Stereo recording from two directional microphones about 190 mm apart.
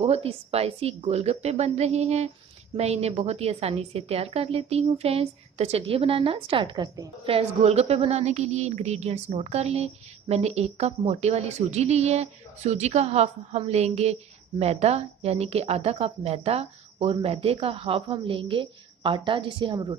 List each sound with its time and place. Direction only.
0.0 s a woman's voice: 30° right (ahead or behind)